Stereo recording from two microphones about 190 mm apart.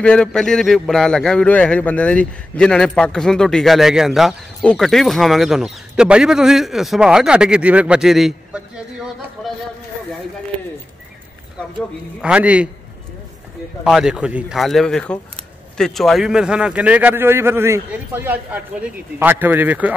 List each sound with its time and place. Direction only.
0.0 s a man's voice: 5° left (ahead or behind)
9.4 s a sound: 5° left (ahead or behind)
12.2 s a man's voice: 5° right (ahead or behind)
13.8 s a man's voice: 5° right (ahead or behind)